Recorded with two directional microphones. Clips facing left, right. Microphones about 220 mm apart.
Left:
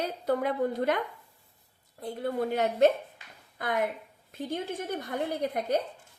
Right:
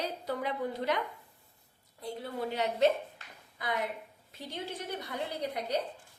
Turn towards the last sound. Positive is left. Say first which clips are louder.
# left 6 dB
turn(degrees=50)  # may be behind; listen again after turning